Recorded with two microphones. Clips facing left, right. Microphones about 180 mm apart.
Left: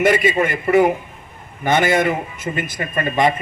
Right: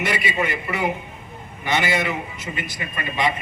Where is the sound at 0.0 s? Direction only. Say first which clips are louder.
Left 8 dB; 50° left (ahead or behind).